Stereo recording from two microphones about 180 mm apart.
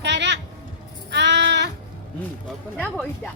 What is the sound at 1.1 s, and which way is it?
Sheep, 75° right (ahead or behind).